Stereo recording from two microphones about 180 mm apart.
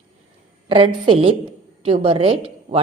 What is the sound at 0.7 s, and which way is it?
A woman's voice, 30° right (ahead or behind).